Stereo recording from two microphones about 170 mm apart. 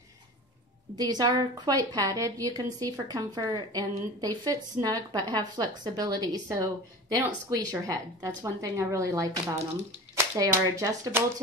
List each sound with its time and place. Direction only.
0.9 s a woman's voice: 25° right (ahead or behind)